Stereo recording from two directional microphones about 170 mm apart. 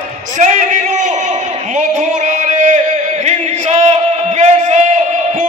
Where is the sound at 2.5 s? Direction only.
45° right (ahead or behind).